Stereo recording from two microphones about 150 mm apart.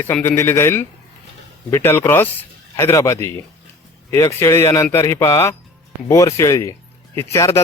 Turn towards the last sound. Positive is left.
turn(degrees=20)  # may be behind; listen again after turning